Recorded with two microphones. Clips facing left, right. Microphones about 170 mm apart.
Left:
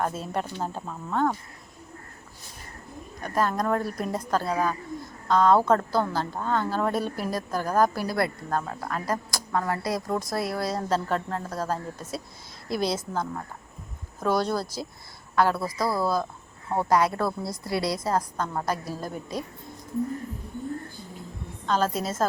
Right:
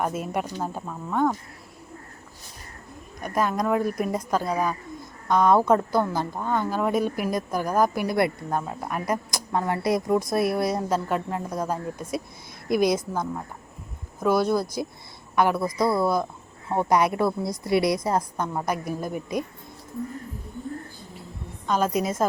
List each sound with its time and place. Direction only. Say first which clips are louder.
0.0 s a woman's voice: right 2 dB; 10° right (ahead or behind)
3.2 s a woman's voice: right 1 dB; 10° right (ahead or behind)
21.7 s a woman's voice: right 2 dB; 15° right (ahead or behind)